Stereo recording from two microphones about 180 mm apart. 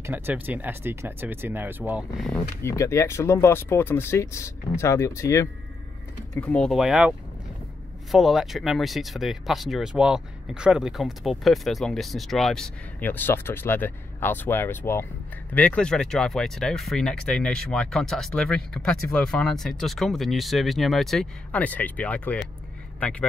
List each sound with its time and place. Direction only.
0.0 s speech: 10° right (ahead or behind)
2.6 s speech: 15° left (ahead or behind)